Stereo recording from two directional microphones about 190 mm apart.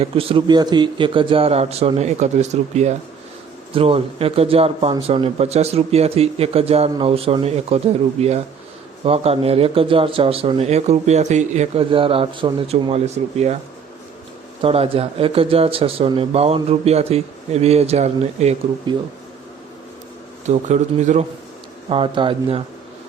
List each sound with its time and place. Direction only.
0.0 s a man's voice: 30° right (ahead or behind)
14.6 s speech: 30° right (ahead or behind)
20.5 s speech: 40° right (ahead or behind)
21.8 s a man's voice: 30° right (ahead or behind)